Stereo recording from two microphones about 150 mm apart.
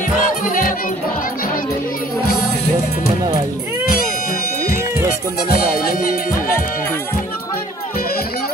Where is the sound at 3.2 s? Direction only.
25° right (ahead or behind).